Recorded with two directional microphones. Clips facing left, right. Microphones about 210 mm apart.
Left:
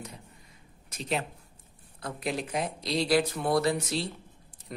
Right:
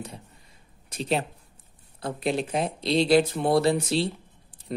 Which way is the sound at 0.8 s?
30° right (ahead or behind).